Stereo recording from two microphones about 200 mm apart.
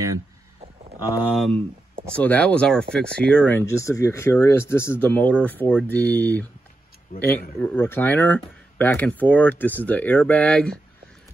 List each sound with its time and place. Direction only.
1.3 s speech: centre (ahead or behind)
7.6 s speech: 10° left (ahead or behind)